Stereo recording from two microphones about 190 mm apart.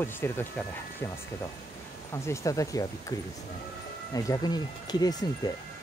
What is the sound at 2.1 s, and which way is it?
Speech, 15° left (ahead or behind).